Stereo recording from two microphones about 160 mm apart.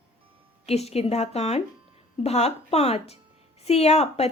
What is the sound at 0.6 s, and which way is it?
A woman's voice, 40° left (ahead or behind).